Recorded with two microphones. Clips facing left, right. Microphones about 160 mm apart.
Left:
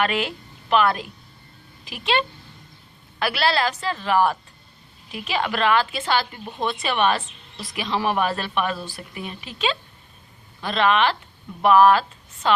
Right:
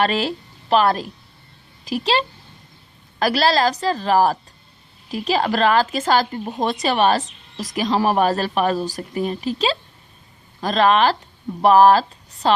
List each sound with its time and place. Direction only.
0.0 s a woman's voice: 35° right (ahead or behind)